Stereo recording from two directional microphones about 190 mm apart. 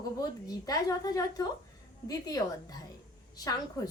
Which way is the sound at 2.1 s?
20° left (ahead or behind).